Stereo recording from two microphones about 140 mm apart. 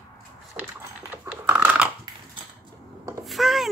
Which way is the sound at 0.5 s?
10° right (ahead or behind).